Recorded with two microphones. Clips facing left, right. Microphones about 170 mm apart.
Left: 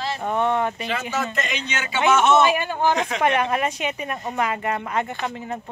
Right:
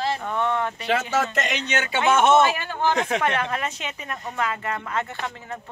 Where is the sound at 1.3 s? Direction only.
75° right (ahead or behind); by 2.3 s 55° right (ahead or behind).